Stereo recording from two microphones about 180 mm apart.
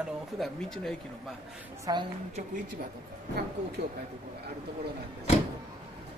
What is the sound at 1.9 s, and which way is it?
Speech, 20° right (ahead or behind).